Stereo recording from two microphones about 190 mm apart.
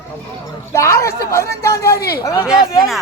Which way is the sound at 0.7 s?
15° left (ahead or behind).